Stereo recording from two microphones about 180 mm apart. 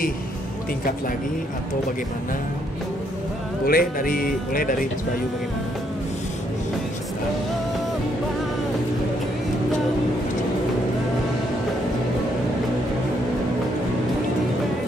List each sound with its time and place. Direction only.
3.6 s speech: 55° left (ahead or behind)